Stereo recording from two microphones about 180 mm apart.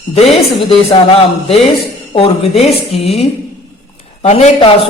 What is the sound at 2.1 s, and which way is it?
A man's voice, 30° left (ahead or behind).